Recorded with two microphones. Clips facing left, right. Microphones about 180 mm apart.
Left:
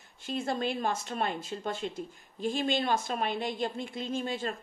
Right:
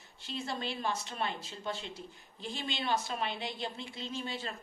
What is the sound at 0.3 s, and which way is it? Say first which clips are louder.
Speech: left 7 dB; 50° left (ahead or behind).